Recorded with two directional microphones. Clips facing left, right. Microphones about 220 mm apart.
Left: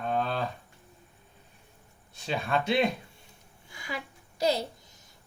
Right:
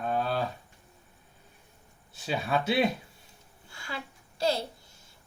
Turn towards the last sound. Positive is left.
turn(degrees=20)  # may be behind; listen again after turning